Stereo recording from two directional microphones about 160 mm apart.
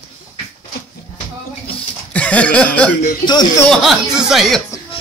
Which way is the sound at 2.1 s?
10° left (ahead or behind).